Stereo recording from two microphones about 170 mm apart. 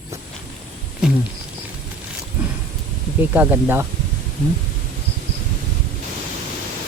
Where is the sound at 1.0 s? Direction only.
5° right (ahead or behind).